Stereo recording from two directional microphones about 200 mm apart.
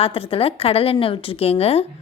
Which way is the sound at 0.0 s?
30° left (ahead or behind).